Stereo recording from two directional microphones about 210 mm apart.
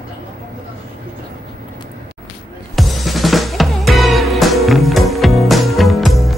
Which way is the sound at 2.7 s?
Centre (ahead or behind).